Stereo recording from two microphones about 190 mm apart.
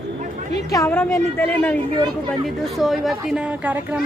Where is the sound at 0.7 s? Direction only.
15° left (ahead or behind).